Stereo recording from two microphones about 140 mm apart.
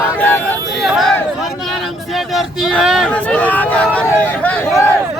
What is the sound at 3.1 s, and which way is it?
Speech, 10° left (ahead or behind).